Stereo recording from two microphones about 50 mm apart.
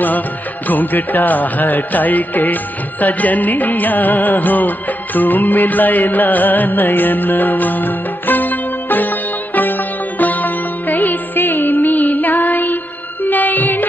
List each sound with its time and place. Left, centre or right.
0.7 s music: left